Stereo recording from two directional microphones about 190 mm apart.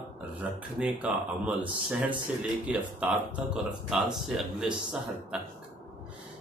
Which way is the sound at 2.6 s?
5° right (ahead or behind).